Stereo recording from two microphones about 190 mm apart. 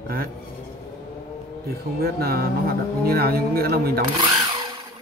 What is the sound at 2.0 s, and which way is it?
Speech, 55° right (ahead or behind).